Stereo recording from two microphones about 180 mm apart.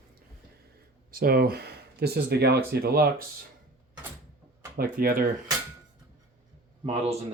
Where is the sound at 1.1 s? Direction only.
55° right (ahead or behind).